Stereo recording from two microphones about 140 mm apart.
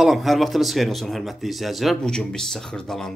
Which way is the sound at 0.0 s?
Centre (ahead or behind).